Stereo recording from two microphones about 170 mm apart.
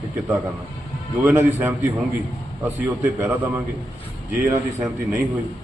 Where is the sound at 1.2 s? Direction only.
10° right (ahead or behind).